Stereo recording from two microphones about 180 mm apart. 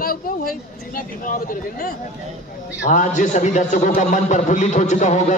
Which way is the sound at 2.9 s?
45° left (ahead or behind).